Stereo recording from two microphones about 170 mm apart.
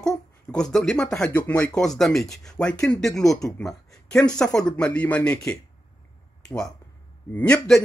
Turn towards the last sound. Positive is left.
turn(degrees=5)  # may be behind; listen again after turning